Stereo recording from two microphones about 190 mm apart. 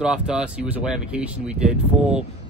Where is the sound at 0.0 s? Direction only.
5° right (ahead or behind).